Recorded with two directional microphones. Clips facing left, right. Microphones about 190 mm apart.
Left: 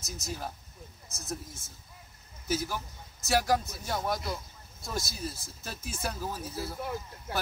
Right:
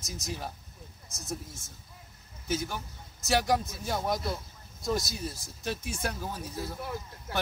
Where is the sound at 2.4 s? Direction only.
5° left (ahead or behind).